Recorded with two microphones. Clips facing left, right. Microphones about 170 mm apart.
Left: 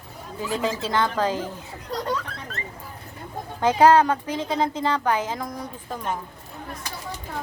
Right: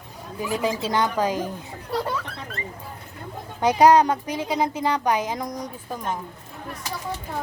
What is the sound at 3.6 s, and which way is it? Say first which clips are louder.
A woman's voice: even; 15° right (ahead or behind).